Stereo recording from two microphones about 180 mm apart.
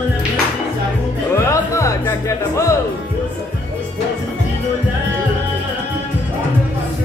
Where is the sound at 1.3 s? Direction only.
15° left (ahead or behind).